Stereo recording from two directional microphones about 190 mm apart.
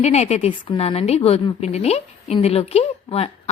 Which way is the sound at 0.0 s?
35° left (ahead or behind).